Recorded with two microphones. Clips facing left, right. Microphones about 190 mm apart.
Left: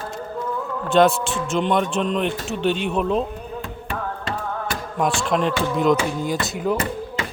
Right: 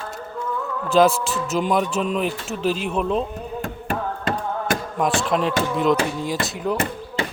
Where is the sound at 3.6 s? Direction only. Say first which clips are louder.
Right 4 dB; 45° right (ahead or behind).